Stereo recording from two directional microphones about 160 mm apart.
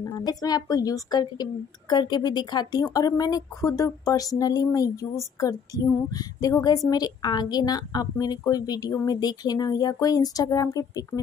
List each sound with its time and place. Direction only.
0.0 s a woman's voice: 20° left (ahead or behind)